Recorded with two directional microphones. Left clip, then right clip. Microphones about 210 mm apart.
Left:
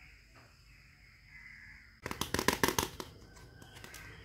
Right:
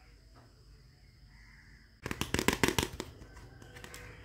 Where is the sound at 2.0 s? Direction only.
20° right (ahead or behind).